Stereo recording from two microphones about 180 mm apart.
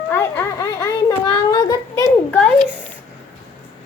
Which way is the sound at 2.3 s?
5° left (ahead or behind).